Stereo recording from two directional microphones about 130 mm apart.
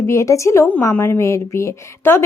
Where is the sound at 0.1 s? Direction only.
25° left (ahead or behind).